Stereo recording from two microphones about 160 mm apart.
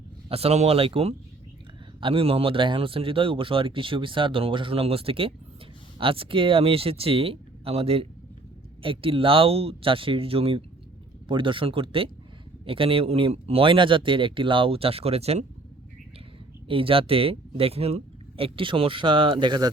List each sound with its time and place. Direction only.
0.3 s speech: 40° right (ahead or behind)
16.6 s speech: 35° right (ahead or behind)